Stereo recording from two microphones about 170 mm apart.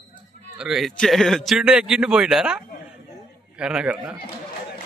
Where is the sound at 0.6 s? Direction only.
Centre (ahead or behind).